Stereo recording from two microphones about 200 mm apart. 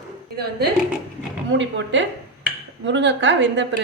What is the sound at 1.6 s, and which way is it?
A woman's voice, 65° right (ahead or behind).